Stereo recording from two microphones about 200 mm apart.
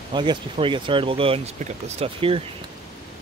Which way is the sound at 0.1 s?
25° right (ahead or behind).